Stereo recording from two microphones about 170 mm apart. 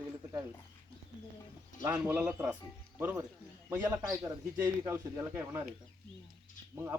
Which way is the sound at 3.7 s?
10° right (ahead or behind).